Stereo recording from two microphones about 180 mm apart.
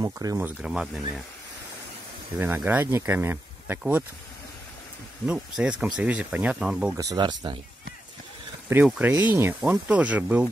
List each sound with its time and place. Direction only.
0.0 s speech: 15° right (ahead or behind)
2.3 s speech: 10° right (ahead or behind)
5.2 s speech: 5° right (ahead or behind)
7.0 s speech: 20° right (ahead or behind)
8.8 s speech: 5° right (ahead or behind)